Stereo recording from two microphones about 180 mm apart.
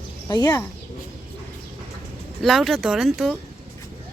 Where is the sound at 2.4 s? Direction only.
Centre (ahead or behind).